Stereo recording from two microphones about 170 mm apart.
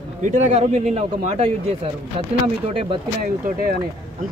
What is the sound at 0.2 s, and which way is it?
Speech, 45° right (ahead or behind).